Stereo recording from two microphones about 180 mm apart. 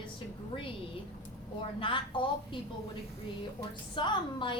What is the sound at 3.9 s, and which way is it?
Speech, 25° left (ahead or behind).